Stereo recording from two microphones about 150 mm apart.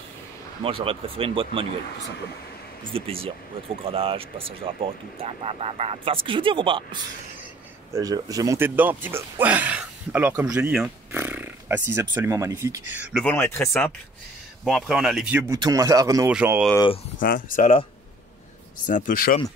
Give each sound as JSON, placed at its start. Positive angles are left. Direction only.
{"t": 0.7, "sound": "speech", "side_deg": -40}
{"t": 2.9, "sound": "speech", "side_deg": -40}
{"t": 7.9, "sound": "speech", "side_deg": -25}
{"t": 11.1, "sound": "a sound", "side_deg": -15}
{"t": 12.2, "sound": "speech", "side_deg": -20}
{"t": 13.1, "sound": "speech", "side_deg": 10}
{"t": 14.6, "sound": "speech", "side_deg": 0}
{"t": 15.3, "sound": "speech", "side_deg": -15}
{"t": 16.3, "sound": "speech", "side_deg": -10}
{"t": 17.2, "sound": "speech", "side_deg": 65}
{"t": 18.9, "sound": "speech", "side_deg": 60}